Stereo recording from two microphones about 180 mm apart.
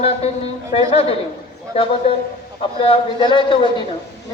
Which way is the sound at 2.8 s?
30° left (ahead or behind).